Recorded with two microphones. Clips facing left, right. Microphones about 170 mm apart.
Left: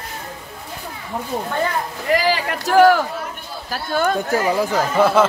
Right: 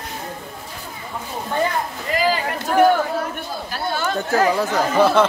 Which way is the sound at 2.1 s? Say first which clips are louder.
Left 2 dB; 80° left.